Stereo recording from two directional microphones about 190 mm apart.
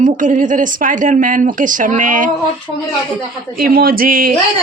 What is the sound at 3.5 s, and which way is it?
Speech, 50° right (ahead or behind).